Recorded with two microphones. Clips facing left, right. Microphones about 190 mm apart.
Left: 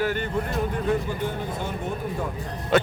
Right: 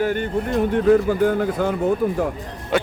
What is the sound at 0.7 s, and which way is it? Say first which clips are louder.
Speech: right 10 dB; 80° right.